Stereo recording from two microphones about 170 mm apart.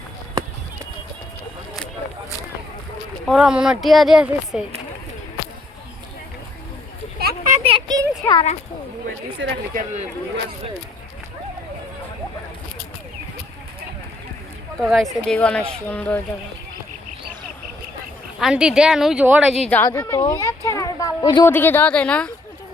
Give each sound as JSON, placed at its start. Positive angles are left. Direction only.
{"t": 3.2, "sound": "a woman's voice", "side_deg": 0}
{"t": 7.2, "sound": "a sound", "side_deg": -65}
{"t": 7.6, "sound": "a sound", "side_deg": -30}
{"t": 8.2, "sound": "a sound", "side_deg": 15}
{"t": 9.4, "sound": "speech", "side_deg": -90}
{"t": 9.7, "sound": "speech", "side_deg": -40}
{"t": 14.8, "sound": "a woman's voice", "side_deg": 0}
{"t": 18.3, "sound": "a woman's voice", "side_deg": -5}
{"t": 19.8, "sound": "speech", "side_deg": 15}
{"t": 21.4, "sound": "a woman's voice", "side_deg": 10}